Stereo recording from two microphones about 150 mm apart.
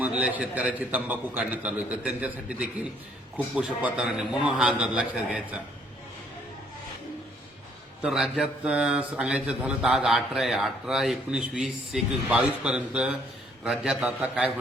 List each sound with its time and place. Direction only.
0.0 s a man's voice: 10° right (ahead or behind)
8.0 s speech: 5° right (ahead or behind)